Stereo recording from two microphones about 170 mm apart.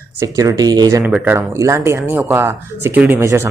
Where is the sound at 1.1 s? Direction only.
15° right (ahead or behind).